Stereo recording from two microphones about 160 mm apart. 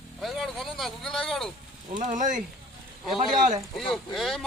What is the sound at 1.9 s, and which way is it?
Speech, 50° right (ahead or behind).